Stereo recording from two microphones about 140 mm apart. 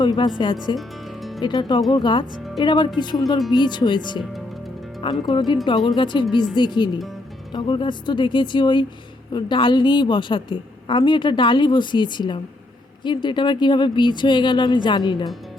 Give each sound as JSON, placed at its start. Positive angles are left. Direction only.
{"t": 0.0, "sound": "a woman's voice", "side_deg": 30}
{"t": 0.8, "sound": "music", "side_deg": 0}
{"t": 1.4, "sound": "a woman's voice", "side_deg": 30}
{"t": 4.2, "sound": "speech", "side_deg": 0}
{"t": 5.2, "sound": "a woman's voice", "side_deg": 35}